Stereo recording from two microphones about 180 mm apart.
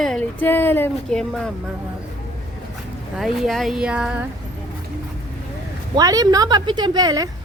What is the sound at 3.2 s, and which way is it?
Speech, centre (ahead or behind).